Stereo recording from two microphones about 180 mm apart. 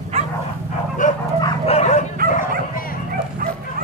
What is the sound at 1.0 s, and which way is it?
Dog, 45° left (ahead or behind).